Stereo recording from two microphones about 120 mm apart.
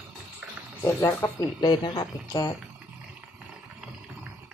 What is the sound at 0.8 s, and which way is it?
Speech, 20° left (ahead or behind).